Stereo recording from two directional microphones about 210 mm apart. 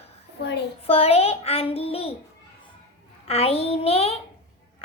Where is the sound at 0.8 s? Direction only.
30° left (ahead or behind).